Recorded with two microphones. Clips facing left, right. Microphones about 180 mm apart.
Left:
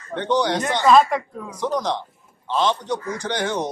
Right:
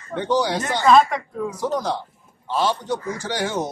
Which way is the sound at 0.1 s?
5° right (ahead or behind).